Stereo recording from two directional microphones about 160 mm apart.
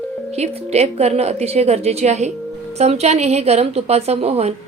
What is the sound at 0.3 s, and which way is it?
A woman's voice, 40° right (ahead or behind).